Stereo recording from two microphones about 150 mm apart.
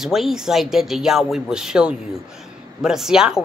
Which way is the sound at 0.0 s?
Centre (ahead or behind).